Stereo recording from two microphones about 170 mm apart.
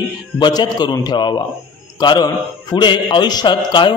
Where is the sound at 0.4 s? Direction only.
25° left (ahead or behind).